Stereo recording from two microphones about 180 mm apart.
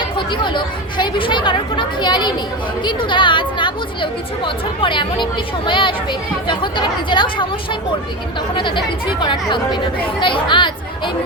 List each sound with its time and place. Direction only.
0.0 s speech: 25° left (ahead or behind)